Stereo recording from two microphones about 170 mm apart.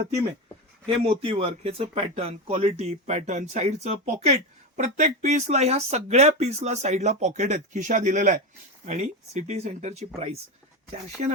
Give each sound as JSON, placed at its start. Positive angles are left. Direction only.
{"t": 0.9, "sound": "speech", "side_deg": -35}